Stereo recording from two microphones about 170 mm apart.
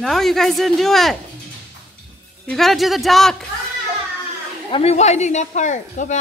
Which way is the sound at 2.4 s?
Centre (ahead or behind).